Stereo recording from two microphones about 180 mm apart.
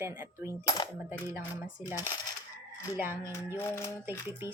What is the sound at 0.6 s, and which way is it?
Coin, 20° left (ahead or behind).